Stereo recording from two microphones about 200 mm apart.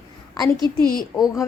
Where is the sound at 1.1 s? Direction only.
15° left (ahead or behind).